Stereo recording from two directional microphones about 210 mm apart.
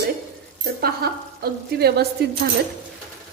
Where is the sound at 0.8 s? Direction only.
50° right (ahead or behind).